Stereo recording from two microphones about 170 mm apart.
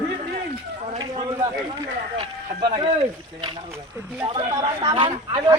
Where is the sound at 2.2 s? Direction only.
25° right (ahead or behind).